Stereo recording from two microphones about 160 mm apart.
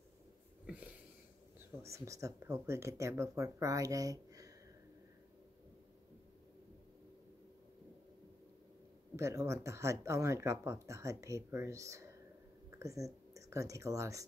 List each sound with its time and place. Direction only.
0.7 s a sound: 10° right (ahead or behind)
1.8 s speech: 20° right (ahead or behind)
9.1 s speech: 20° right (ahead or behind)